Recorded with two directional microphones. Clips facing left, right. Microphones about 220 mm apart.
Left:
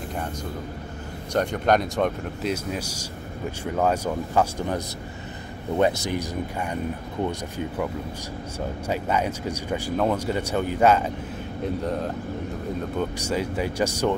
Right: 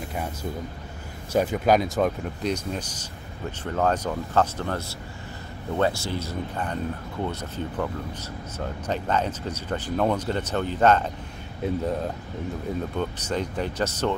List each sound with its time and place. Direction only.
0.1 s speech: 5° right (ahead or behind); by 11.1 s 10° left (ahead or behind)
11.6 s speech: centre (ahead or behind)
13.2 s speech: 10° left (ahead or behind)